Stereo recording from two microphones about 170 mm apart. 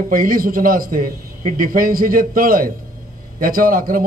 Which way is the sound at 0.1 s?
55° right (ahead or behind).